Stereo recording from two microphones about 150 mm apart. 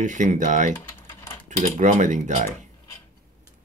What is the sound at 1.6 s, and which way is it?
Speech, 55° right (ahead or behind).